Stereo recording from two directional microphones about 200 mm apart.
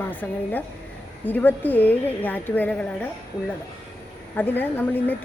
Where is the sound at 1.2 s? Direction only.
10° left (ahead or behind).